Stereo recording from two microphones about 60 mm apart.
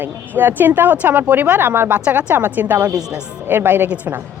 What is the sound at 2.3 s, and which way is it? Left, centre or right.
Speech, right.